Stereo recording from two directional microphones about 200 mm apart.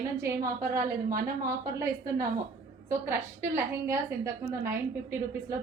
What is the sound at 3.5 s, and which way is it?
A woman's voice, 15° right (ahead or behind).